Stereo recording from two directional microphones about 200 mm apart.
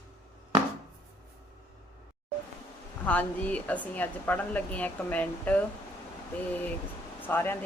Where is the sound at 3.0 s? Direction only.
10° left (ahead or behind).